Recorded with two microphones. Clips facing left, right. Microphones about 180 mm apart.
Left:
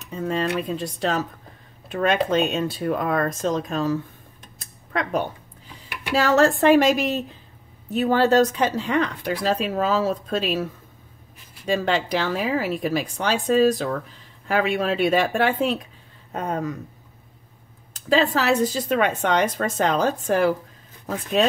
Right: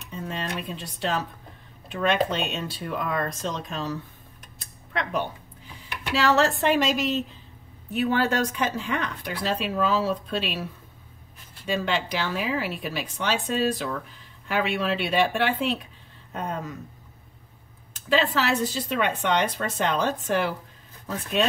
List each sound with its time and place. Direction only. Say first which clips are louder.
0.0 s speech: left 8 dB; 45° left (ahead or behind)
6.1 s speech: left 4 dB; 45° left (ahead or behind)
7.9 s speech: left 6 dB; 35° left (ahead or behind)
11.6 s speech: left 4 dB; 40° left (ahead or behind)
18.1 s speech: left 4 dB; 40° left (ahead or behind)